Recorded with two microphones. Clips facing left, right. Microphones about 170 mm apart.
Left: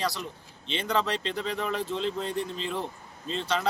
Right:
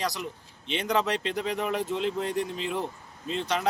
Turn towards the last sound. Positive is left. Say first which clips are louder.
# right 1 dB
turn(degrees=-10)  # may be behind; listen again after turning